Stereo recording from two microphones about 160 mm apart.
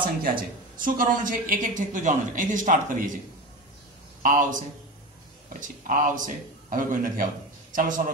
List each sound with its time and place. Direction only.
0.0 s a woman's voice: 65° right (ahead or behind)
4.2 s a woman's voice: 55° right (ahead or behind)